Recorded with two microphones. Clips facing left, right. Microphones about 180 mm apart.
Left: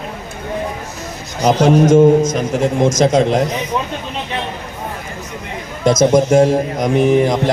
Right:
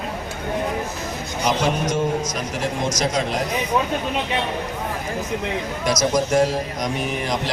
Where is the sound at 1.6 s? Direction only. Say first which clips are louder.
Left 12 dB; 50° left (ahead or behind).